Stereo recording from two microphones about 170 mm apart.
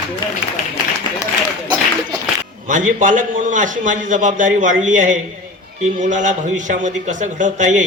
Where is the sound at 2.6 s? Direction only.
50° right (ahead or behind).